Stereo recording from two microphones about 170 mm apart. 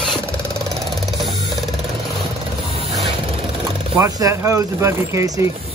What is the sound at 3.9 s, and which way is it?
Speech, 15° right (ahead or behind).